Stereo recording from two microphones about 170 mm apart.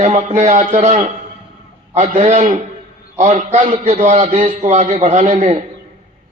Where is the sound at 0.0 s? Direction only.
45° right (ahead or behind).